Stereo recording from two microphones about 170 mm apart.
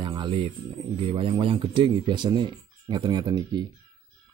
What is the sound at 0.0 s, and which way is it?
Music, 30° right (ahead or behind).